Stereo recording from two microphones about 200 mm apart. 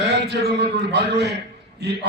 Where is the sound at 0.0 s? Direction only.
60° right (ahead or behind).